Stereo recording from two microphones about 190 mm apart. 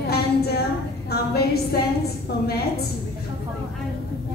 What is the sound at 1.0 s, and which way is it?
A woman's voice, 55° left (ahead or behind).